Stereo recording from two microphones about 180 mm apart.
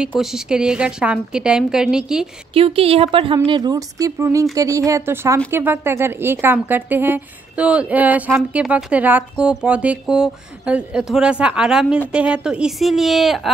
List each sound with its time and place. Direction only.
0.2 s speech: 5° right (ahead or behind)
2.5 s a woman's voice: 30° right (ahead or behind); by 13.5 s centre (ahead or behind)